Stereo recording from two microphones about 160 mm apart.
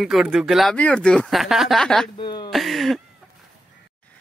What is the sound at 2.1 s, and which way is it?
Speech, 30° left (ahead or behind).